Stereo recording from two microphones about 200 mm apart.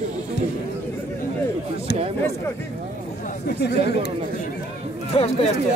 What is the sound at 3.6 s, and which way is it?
Speech, 55° left (ahead or behind).